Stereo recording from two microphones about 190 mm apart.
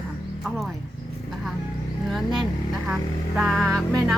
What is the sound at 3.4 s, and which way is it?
Speech, centre (ahead or behind).